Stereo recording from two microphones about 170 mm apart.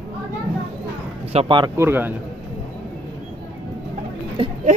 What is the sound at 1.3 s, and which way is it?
Speech, 30° right (ahead or behind).